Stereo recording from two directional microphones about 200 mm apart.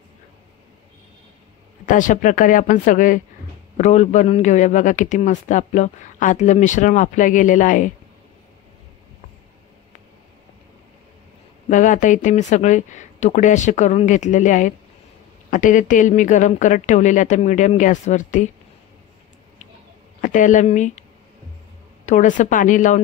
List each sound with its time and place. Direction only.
1.9 s speech: 40° left (ahead or behind)
11.7 s speech: 40° left (ahead or behind)
20.2 s speech: 40° left (ahead or behind)
22.0 s speech: 40° left (ahead or behind)